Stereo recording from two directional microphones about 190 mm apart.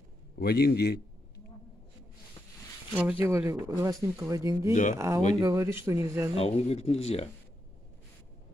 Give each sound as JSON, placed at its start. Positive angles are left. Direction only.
{"t": 0.4, "sound": "a man's voice", "side_deg": 55}
{"t": 2.9, "sound": "speech", "side_deg": -10}
{"t": 6.3, "sound": "speech", "side_deg": 35}